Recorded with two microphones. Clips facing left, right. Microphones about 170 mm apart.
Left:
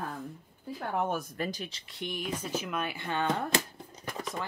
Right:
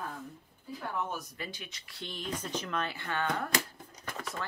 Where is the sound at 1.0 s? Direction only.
55° left (ahead or behind).